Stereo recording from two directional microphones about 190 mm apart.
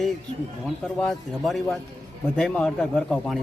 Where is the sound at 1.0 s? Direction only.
Centre (ahead or behind).